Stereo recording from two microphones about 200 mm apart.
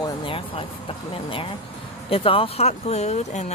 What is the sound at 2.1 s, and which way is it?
Speech, 25° left (ahead or behind).